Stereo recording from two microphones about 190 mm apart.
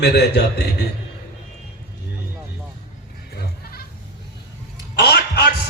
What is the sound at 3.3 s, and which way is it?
Goat, 55° left (ahead or behind).